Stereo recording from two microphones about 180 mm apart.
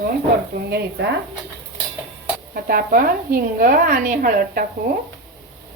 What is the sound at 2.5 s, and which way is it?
Speech, 55° right (ahead or behind).